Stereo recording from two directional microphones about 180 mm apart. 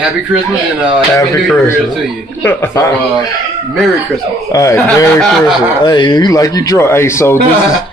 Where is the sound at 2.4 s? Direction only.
15° left (ahead or behind).